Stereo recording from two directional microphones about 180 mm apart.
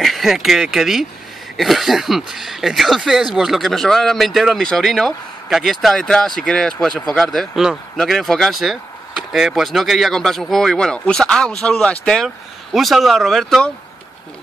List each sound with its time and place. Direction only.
0.0 s speech: centre (ahead or behind)